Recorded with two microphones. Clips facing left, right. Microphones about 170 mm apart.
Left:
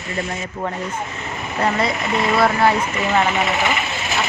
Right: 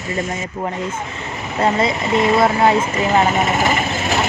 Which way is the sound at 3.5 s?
40° right (ahead or behind).